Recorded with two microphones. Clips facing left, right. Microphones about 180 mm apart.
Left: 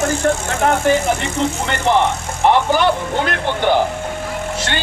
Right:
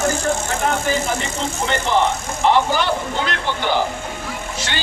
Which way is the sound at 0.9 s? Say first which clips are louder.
Left 5 dB; 65° left (ahead or behind).